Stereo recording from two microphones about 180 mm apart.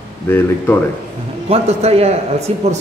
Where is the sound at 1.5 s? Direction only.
35° right (ahead or behind).